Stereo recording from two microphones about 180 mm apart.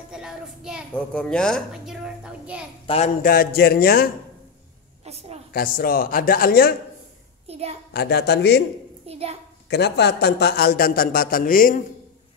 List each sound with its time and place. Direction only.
0.1 s a child's voice: 5° right (ahead or behind)
3.2 s a man's voice: 55° left (ahead or behind)
5.0 s a woman's voice: 35° right (ahead or behind)
5.5 s speech: 55° left (ahead or behind)
7.4 s a child's voice: 35° right (ahead or behind)
7.9 s a woman's voice: 65° left (ahead or behind)
9.0 s a child's voice: 35° right (ahead or behind)
9.7 s a man's voice: 65° left (ahead or behind); by 11.8 s 50° left (ahead or behind)